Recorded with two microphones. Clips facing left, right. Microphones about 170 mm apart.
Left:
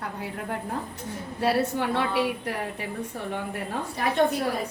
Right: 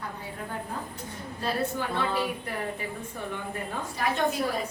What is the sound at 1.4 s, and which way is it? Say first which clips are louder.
Speech: left 5 dB; 75° left (ahead or behind).